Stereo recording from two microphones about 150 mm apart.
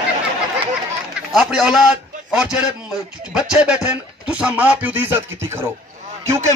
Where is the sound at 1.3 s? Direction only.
Centre (ahead or behind).